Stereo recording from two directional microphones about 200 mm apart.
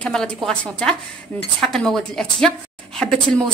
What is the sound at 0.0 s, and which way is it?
A woman's voice, 5° left (ahead or behind).